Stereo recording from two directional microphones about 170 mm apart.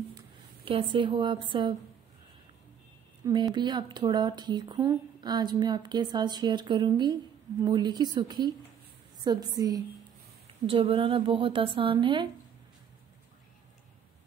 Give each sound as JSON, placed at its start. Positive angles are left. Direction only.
{"t": 0.7, "sound": "speech", "side_deg": -30}
{"t": 3.3, "sound": "a woman's voice", "side_deg": -25}